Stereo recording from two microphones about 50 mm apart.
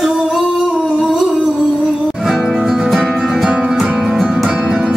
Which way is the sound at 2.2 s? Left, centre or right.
Centre.